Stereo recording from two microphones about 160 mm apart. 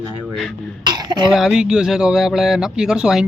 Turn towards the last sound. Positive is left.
turn(degrees=-5)  # may be behind; listen again after turning